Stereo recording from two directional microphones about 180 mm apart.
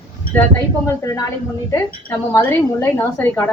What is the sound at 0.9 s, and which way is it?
A woman's voice, 20° left (ahead or behind).